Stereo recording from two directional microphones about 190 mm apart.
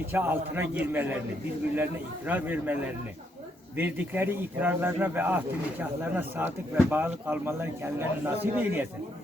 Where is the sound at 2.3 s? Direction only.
10° right (ahead or behind).